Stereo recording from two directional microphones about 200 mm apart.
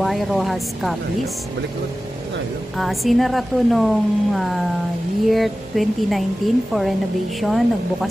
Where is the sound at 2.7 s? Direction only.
Centre (ahead or behind).